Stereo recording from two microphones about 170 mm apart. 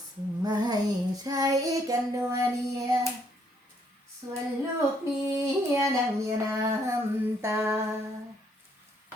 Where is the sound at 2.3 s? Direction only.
20° right (ahead or behind).